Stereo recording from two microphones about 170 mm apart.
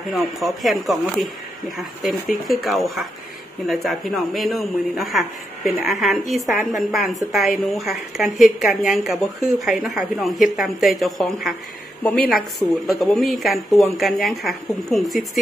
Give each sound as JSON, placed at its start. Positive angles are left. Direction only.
{"t": 0.1, "sound": "speech", "side_deg": 0}
{"t": 9.1, "sound": "speech", "side_deg": -20}
{"t": 9.6, "sound": "a woman's voice", "side_deg": 0}